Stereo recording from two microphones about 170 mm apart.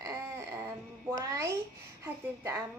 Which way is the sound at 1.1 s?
20° right (ahead or behind).